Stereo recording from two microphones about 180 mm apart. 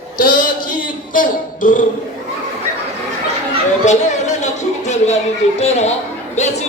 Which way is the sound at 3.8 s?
40° left (ahead or behind).